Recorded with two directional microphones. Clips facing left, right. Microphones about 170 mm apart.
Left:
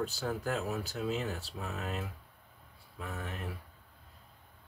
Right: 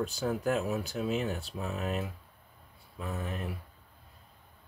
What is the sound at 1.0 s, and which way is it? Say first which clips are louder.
Speech: right 3 dB; 15° right (ahead or behind).